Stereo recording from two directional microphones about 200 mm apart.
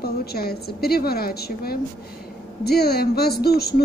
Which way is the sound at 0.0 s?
50° left (ahead or behind).